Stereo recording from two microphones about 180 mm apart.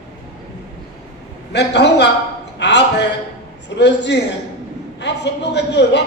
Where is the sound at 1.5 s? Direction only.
70° left (ahead or behind).